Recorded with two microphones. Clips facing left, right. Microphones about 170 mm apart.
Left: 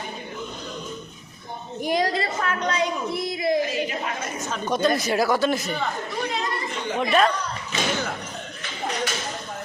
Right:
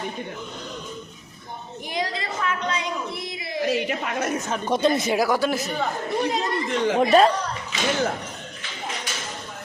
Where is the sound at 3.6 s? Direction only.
65° right (ahead or behind).